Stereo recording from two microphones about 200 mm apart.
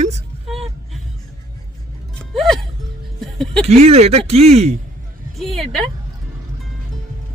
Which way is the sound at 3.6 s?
30° right (ahead or behind).